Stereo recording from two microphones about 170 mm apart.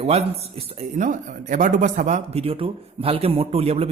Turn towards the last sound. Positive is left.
turn(degrees=-35)  # may be behind; listen again after turning